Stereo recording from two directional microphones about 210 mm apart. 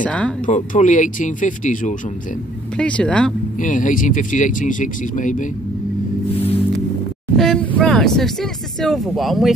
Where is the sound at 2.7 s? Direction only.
5° left (ahead or behind).